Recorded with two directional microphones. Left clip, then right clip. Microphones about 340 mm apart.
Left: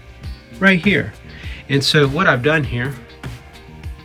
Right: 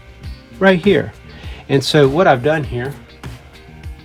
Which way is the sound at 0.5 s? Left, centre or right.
Centre.